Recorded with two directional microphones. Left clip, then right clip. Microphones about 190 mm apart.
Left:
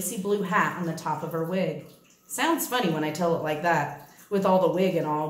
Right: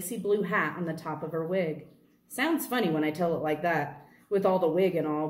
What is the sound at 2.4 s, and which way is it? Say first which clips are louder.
A woman's voice: left 3 dB; 10° right (ahead or behind).